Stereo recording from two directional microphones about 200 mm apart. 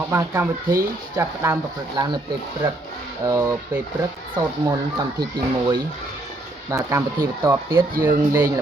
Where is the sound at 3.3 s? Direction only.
15° right (ahead or behind).